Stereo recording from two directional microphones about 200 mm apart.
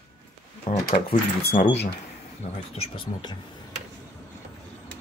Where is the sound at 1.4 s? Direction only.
50° left (ahead or behind).